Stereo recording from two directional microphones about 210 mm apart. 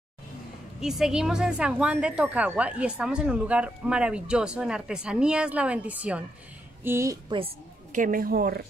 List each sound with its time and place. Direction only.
0.7 s a woman's voice: centre (ahead or behind)
7.3 s a woman's voice: 30° right (ahead or behind)